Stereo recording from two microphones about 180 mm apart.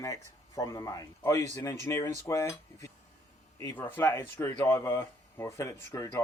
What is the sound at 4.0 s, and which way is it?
Speech, 10° left (ahead or behind).